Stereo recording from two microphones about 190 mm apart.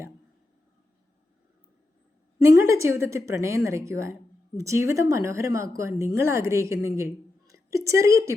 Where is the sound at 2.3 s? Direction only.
15° right (ahead or behind).